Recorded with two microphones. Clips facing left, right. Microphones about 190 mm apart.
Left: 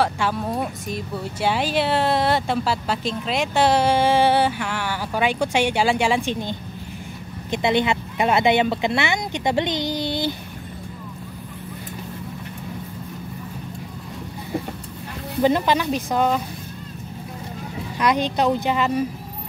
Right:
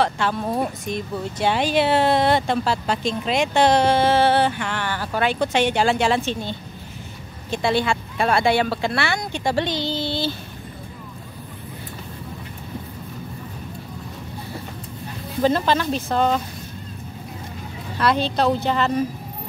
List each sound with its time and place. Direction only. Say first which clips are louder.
0.0 s speech: even; 10° left (ahead or behind)
7.5 s speech: left 1 dB; 20° left (ahead or behind)
15.4 s speech: even; 15° left (ahead or behind)
17.9 s speech: even; 15° left (ahead or behind)